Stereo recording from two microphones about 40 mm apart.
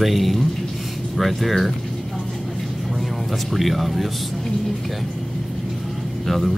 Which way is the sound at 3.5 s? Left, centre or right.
Centre.